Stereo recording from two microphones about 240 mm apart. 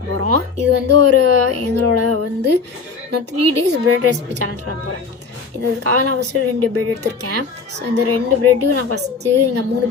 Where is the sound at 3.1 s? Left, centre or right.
Right.